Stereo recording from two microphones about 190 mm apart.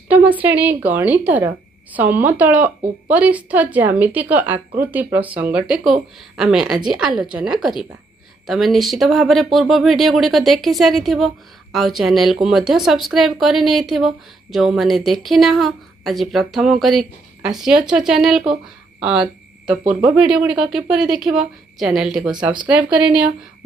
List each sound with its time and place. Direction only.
0.1 s a woman's voice: 10° right (ahead or behind)